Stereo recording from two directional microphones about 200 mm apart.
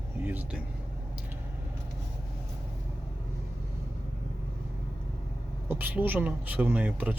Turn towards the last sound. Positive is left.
turn(degrees=-5)  # may be behind; listen again after turning